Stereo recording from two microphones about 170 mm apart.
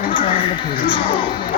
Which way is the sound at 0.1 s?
30° left (ahead or behind).